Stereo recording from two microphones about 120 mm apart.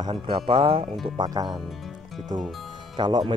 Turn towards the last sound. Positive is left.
turn(degrees=-40)  # may be behind; listen again after turning